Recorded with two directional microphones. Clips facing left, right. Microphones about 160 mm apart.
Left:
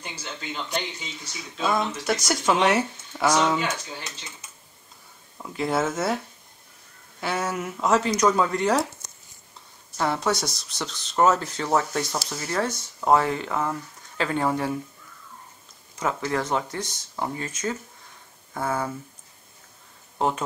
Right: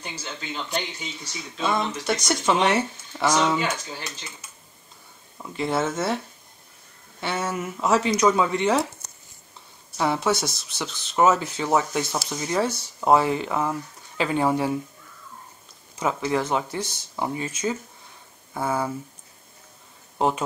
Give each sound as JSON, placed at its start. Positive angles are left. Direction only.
{"t": 0.0, "sound": "speech", "side_deg": -10}
{"t": 1.3, "sound": "speech", "side_deg": 0}
{"t": 5.4, "sound": "speech", "side_deg": 0}
{"t": 9.9, "sound": "speech", "side_deg": -5}
{"t": 16.0, "sound": "speech", "side_deg": -15}
{"t": 20.2, "sound": "speech", "side_deg": -15}